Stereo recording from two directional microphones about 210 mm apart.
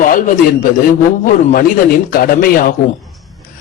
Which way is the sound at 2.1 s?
45° left (ahead or behind).